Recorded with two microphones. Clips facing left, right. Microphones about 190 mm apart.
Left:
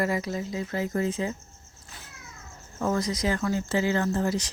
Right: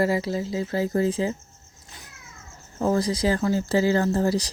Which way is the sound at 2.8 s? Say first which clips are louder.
Right 4 dB; 30° right (ahead or behind).